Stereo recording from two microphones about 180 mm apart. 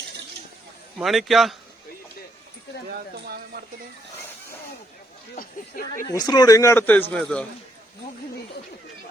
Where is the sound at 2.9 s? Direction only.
55° right (ahead or behind).